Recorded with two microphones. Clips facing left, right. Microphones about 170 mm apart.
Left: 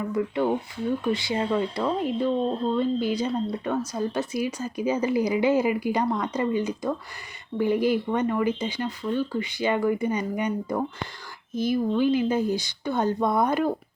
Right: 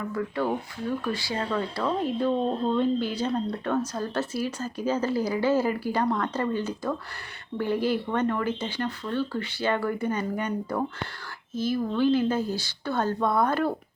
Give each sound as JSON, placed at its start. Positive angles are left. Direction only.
{"t": 0.1, "sound": "speech", "side_deg": 20}